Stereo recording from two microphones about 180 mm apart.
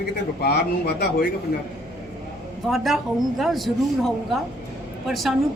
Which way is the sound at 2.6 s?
Centre (ahead or behind).